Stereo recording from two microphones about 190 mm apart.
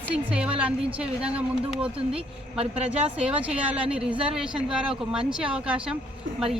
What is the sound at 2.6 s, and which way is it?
A woman's voice, 5° right (ahead or behind).